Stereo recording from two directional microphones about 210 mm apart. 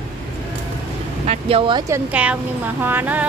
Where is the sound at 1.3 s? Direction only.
25° right (ahead or behind).